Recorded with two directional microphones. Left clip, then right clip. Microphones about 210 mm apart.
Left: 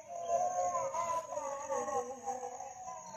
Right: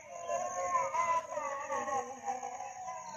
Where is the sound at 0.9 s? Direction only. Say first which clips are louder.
Right 4 dB; 30° left (ahead or behind).